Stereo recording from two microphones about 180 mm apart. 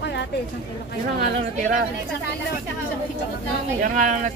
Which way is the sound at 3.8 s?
45° right (ahead or behind).